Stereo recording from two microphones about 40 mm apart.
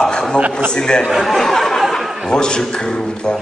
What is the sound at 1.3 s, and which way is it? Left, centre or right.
Speech, centre.